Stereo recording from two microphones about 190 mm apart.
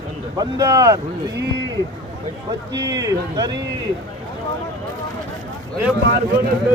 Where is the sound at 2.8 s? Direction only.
20° right (ahead or behind).